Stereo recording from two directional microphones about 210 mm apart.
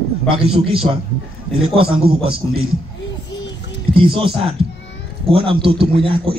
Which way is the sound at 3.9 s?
25° right (ahead or behind).